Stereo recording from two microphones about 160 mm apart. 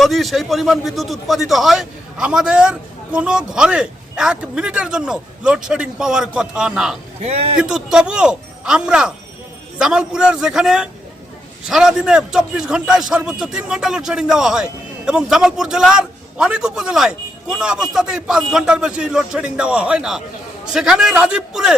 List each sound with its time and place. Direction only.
0.0 s a man's voice: centre (ahead or behind)
7.2 s a man's voice: 40° right (ahead or behind)
7.5 s a man's voice: 5° right (ahead or behind)